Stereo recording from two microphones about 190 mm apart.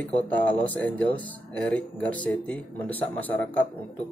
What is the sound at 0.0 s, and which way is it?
Speech, 10° left (ahead or behind).